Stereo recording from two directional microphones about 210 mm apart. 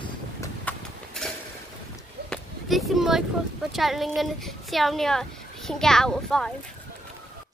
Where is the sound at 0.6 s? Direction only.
Centre (ahead or behind).